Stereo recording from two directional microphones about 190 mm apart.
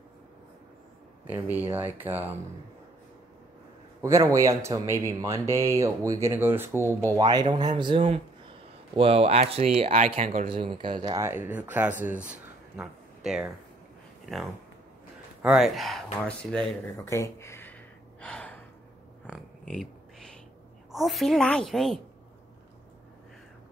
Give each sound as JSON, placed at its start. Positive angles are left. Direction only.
{"t": 1.2, "sound": "speech", "side_deg": -10}
{"t": 4.0, "sound": "speech", "side_deg": -15}
{"t": 10.4, "sound": "speech", "side_deg": -30}
{"t": 11.2, "sound": "speech", "side_deg": -10}
{"t": 12.3, "sound": "a sound", "side_deg": -5}
{"t": 15.4, "sound": "speech", "side_deg": 0}
{"t": 18.2, "sound": "gasp", "side_deg": 5}
{"t": 19.7, "sound": "a sound", "side_deg": 5}
{"t": 20.9, "sound": "a woman's voice", "side_deg": 0}